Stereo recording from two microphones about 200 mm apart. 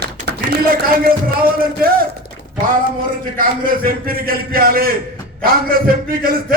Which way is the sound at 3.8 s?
45° right (ahead or behind).